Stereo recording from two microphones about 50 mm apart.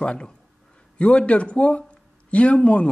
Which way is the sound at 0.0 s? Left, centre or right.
Left.